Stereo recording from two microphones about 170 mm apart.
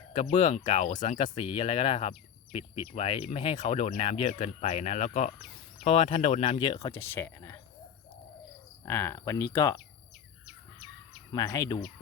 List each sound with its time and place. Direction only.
0.1 s speech: 45° left (ahead or behind)
0.9 s speech: 45° left (ahead or behind)
1.4 s speech: 30° left (ahead or behind); by 7.6 s 15° left (ahead or behind)
8.8 s speech: 15° left (ahead or behind)
11.3 s speech: 20° left (ahead or behind)